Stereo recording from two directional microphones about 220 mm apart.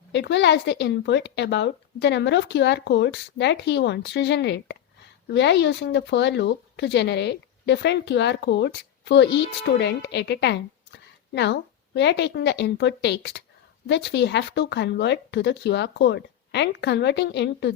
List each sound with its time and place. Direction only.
0.1 s speech: 55° left (ahead or behind)